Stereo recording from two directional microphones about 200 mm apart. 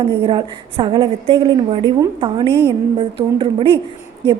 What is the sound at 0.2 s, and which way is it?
A woman's voice, 25° right (ahead or behind).